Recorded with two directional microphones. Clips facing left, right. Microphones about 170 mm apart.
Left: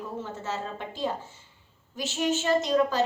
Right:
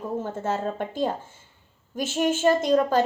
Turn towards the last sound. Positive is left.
turn(degrees=-50)  # may be behind; listen again after turning